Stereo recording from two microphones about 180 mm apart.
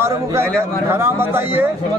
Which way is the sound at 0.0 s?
15° right (ahead or behind).